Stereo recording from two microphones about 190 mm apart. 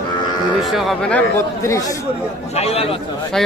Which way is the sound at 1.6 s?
15° left (ahead or behind).